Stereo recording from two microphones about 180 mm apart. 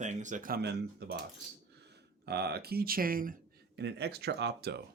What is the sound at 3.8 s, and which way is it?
Speech, 70° right (ahead or behind).